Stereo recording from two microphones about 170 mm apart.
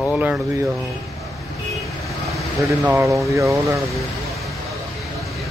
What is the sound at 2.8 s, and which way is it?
Speech, 15° right (ahead or behind).